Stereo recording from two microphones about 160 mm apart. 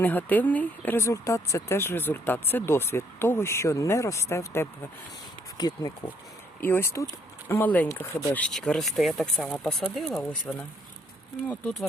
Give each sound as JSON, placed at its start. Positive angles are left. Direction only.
{"t": 0.0, "sound": "speech", "side_deg": 10}
{"t": 5.5, "sound": "speech", "side_deg": 25}
{"t": 6.6, "sound": "speech", "side_deg": 15}